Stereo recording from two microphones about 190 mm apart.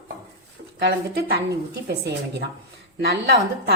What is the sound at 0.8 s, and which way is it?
Speech, 60° right (ahead or behind).